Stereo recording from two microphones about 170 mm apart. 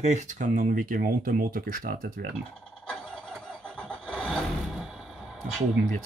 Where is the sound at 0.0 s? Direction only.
45° right (ahead or behind).